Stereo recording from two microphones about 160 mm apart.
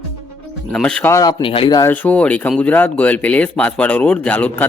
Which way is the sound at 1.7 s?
10° left (ahead or behind).